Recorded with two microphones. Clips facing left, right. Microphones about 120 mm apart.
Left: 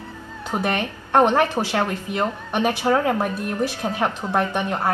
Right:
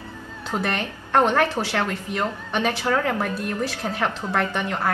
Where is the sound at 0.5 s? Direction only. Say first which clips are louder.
Left 2 dB; 15° left (ahead or behind).